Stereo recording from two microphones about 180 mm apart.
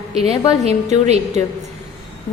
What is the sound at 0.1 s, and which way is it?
A woman's voice, 35° right (ahead or behind).